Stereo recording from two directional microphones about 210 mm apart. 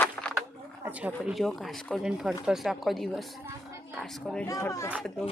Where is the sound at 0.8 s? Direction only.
5° right (ahead or behind).